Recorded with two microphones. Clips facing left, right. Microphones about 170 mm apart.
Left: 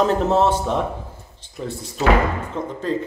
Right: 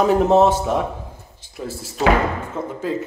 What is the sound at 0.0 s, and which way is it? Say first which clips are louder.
Speech: right 3 dB; 10° right (ahead or behind).